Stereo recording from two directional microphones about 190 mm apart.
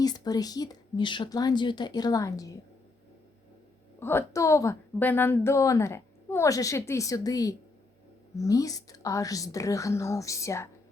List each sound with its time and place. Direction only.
0.0 s speech: 20° left (ahead or behind)
4.0 s a woman's voice: 15° left (ahead or behind)